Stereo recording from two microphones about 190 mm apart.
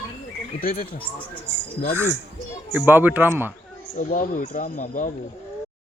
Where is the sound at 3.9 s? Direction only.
45° left (ahead or behind).